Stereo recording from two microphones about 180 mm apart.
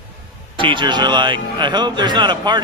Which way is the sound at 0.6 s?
25° right (ahead or behind).